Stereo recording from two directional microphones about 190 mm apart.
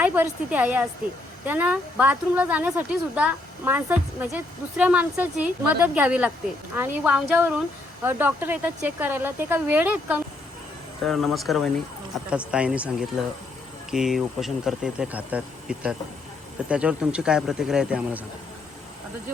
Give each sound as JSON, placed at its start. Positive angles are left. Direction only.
{"t": 0.0, "sound": "a woman's voice", "side_deg": -10}